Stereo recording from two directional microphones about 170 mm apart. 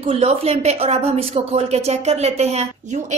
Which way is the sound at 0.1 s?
35° right (ahead or behind).